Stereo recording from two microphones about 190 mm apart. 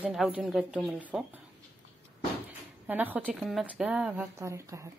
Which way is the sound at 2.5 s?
10° right (ahead or behind).